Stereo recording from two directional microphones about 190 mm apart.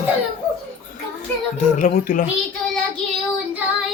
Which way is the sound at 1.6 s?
45° left (ahead or behind).